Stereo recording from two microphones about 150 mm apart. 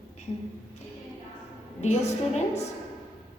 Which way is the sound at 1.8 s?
50° left (ahead or behind).